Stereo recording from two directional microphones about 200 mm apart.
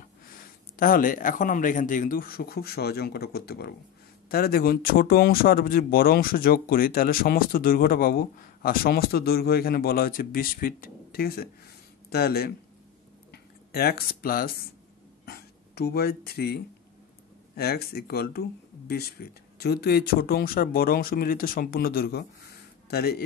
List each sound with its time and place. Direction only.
0.3 s speech: 45° left (ahead or behind)